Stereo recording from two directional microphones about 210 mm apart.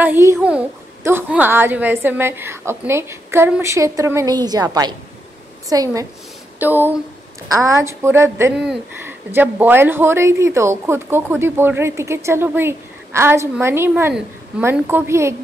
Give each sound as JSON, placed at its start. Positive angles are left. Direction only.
{"t": 0.0, "sound": "speech", "side_deg": -10}